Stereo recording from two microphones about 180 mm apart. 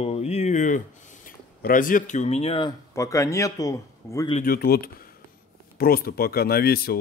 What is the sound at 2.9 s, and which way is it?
A man's voice, 15° left (ahead or behind).